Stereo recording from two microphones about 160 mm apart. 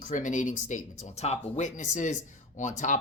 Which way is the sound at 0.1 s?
50° left (ahead or behind).